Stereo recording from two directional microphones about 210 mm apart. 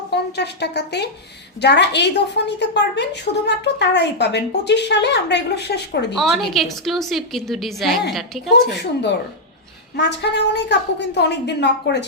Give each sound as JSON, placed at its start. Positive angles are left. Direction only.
{"t": 0.1, "sound": "a woman's voice", "side_deg": 55}
{"t": 6.1, "sound": "a woman's voice", "side_deg": 0}
{"t": 8.8, "sound": "a woman's voice", "side_deg": 55}